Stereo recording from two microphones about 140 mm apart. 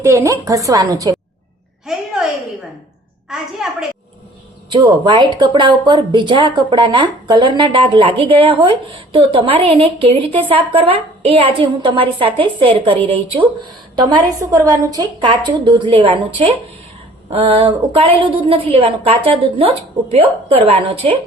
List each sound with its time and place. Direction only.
0.0 s a woman's voice: 20° right (ahead or behind)
1.9 s a sound: 5° right (ahead or behind)
3.2 s a woman's voice: 5° right (ahead or behind)
4.7 s a woman's voice: 30° right (ahead or behind)